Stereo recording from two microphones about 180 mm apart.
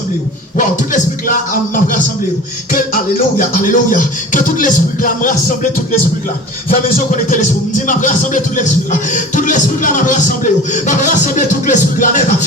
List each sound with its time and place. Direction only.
0.5 s speech: 45° left (ahead or behind)
6.7 s speech: 45° left (ahead or behind)